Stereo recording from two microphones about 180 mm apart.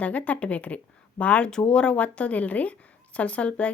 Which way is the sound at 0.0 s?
10° left (ahead or behind).